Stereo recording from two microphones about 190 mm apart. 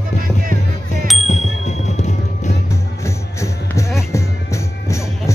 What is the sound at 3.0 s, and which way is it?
Music, 15° left (ahead or behind).